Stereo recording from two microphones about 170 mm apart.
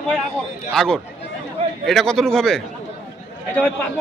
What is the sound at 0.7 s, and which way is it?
Speech, centre (ahead or behind).